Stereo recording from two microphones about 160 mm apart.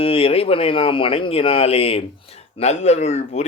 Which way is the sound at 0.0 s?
35° left (ahead or behind).